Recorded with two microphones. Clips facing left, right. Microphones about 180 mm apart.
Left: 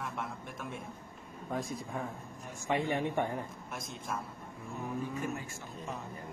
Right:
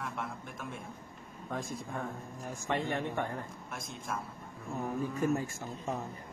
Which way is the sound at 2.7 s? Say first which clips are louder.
Left 2 dB; 15° left (ahead or behind).